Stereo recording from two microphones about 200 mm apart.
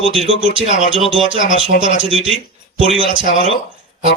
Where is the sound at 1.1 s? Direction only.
25° right (ahead or behind).